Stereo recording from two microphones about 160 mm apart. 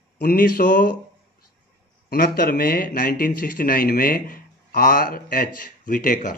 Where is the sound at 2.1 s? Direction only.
70° left (ahead or behind).